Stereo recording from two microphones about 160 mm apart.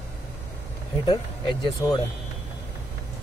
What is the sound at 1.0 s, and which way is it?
Speech, 30° left (ahead or behind).